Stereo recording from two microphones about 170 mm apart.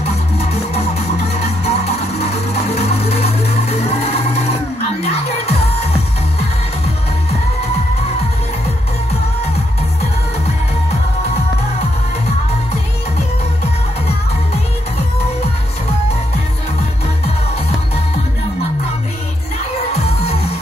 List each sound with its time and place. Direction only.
1.3 s music: 35° left (ahead or behind)